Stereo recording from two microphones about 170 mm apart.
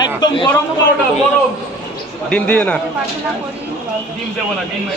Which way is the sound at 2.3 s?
5° left (ahead or behind).